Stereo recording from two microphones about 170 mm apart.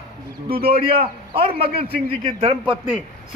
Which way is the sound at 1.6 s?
65° right (ahead or behind).